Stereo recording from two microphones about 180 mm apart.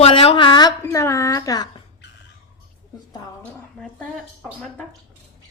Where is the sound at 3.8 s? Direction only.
5° left (ahead or behind).